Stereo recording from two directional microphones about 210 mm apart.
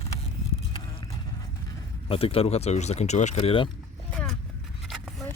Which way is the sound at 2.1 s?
25° left (ahead or behind).